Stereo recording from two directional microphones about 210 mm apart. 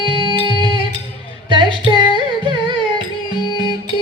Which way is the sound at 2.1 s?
20° right (ahead or behind).